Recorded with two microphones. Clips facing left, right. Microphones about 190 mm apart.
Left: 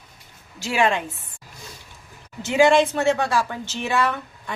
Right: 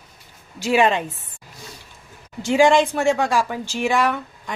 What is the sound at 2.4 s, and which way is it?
A woman's voice, 15° right (ahead or behind).